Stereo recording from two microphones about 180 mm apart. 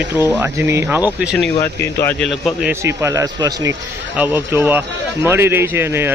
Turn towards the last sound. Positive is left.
turn(degrees=-15)  # may be behind; listen again after turning